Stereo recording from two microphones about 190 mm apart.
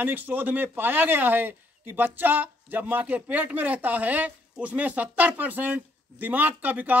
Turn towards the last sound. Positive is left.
turn(degrees=-10)  # may be behind; listen again after turning